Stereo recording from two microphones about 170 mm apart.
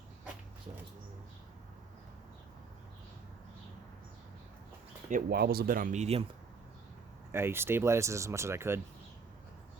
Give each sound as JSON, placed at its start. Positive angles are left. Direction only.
{"t": 5.0, "sound": "speech", "side_deg": -55}
{"t": 7.3, "sound": "speech", "side_deg": -15}